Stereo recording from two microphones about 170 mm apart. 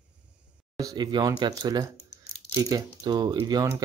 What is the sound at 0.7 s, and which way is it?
Speech, 25° right (ahead or behind).